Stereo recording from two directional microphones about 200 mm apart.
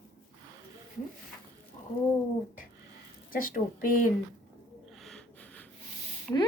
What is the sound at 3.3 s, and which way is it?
Speech, 45° left (ahead or behind).